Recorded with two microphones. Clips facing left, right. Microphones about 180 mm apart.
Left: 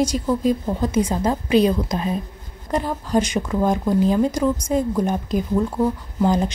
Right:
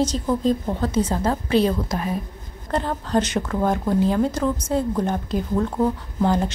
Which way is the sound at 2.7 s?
10° left (ahead or behind).